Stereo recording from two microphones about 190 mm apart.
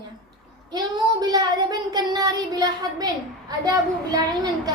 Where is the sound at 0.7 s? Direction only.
20° right (ahead or behind).